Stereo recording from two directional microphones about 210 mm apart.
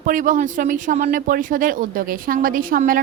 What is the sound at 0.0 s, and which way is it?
A woman's voice, 40° right (ahead or behind).